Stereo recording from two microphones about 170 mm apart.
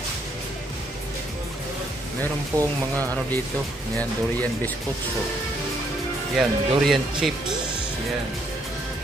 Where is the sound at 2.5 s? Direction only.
20° right (ahead or behind).